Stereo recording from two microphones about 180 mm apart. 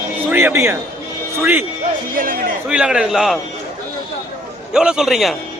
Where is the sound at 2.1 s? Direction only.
50° right (ahead or behind).